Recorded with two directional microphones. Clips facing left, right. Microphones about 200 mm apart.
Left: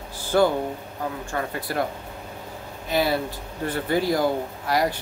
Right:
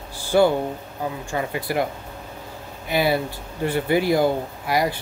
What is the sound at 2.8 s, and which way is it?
Speech, 10° right (ahead or behind).